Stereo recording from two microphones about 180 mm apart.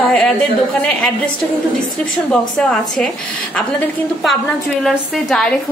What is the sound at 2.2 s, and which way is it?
Speech, 5° left (ahead or behind).